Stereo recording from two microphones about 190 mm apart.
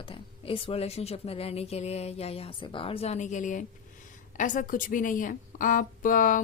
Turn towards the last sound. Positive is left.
turn(degrees=45)  # may be behind; listen again after turning